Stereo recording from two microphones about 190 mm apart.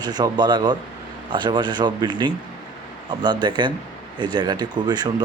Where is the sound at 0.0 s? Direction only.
20° right (ahead or behind).